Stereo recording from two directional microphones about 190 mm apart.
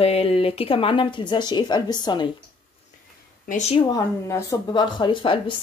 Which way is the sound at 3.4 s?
35° left (ahead or behind).